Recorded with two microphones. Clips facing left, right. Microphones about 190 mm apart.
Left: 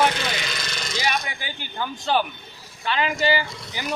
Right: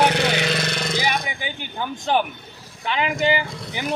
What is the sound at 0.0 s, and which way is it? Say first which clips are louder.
Vehicle: right 4 dB; 65° right (ahead or behind).